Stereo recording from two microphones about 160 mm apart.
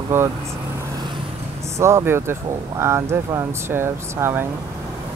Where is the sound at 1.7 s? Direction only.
15° right (ahead or behind).